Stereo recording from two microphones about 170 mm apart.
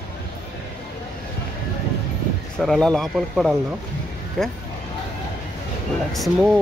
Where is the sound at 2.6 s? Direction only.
5° left (ahead or behind).